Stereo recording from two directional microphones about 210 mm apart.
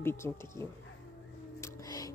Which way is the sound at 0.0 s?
10° left (ahead or behind).